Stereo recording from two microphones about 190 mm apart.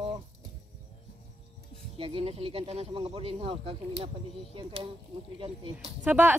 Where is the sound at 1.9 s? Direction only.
30° right (ahead or behind).